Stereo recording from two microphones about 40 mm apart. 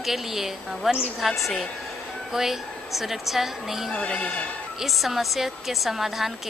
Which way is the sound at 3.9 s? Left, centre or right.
Left.